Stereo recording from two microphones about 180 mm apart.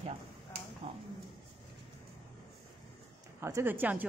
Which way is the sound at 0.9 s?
30° right (ahead or behind).